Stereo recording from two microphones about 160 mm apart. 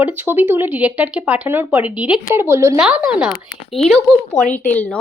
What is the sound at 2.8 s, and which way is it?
Speech, 5° right (ahead or behind).